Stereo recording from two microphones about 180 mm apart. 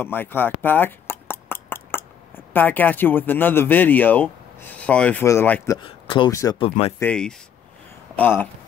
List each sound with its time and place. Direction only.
0.0 s speech: 10° left (ahead or behind)
5.8 s speech: 25° left (ahead or behind)
7.0 s speech: 5° left (ahead or behind)